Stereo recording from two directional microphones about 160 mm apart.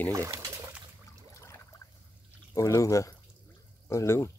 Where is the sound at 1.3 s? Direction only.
20° left (ahead or behind).